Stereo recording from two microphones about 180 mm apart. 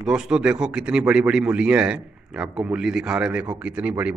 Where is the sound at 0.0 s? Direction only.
5° right (ahead or behind).